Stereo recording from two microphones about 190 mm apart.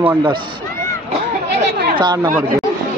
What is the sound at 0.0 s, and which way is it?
Speech, 20° right (ahead or behind).